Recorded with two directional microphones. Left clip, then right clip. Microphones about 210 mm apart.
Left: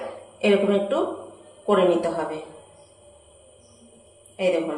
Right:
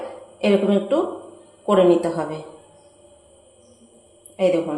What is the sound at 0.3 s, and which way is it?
A woman's voice, 35° right (ahead or behind).